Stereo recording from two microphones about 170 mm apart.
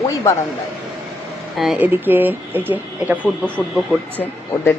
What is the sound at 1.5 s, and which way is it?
Speech, centre (ahead or behind).